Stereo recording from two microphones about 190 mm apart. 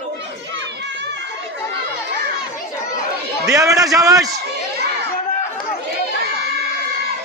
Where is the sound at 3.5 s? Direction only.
15° right (ahead or behind).